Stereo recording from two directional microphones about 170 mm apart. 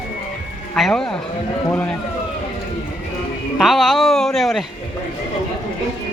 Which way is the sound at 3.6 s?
Centre (ahead or behind).